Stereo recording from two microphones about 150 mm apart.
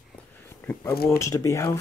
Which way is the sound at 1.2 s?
20° left (ahead or behind).